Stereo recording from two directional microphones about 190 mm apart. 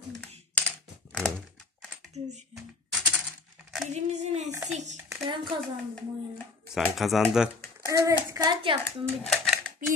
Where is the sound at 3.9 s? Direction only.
35° right (ahead or behind).